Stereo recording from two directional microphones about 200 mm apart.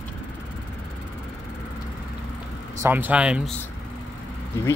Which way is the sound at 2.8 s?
10° right (ahead or behind).